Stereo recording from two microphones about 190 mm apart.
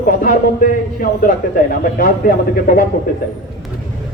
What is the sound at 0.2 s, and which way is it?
Speech, 45° left (ahead or behind).